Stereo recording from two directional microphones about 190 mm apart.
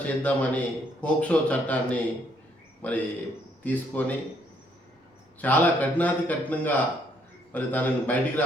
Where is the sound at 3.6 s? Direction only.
10° left (ahead or behind).